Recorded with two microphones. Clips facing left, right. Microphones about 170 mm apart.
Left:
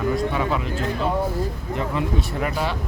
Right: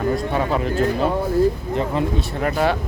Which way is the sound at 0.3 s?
40° right (ahead or behind).